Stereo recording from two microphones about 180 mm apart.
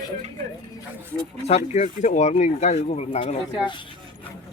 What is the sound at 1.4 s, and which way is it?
Speech, 35° left (ahead or behind).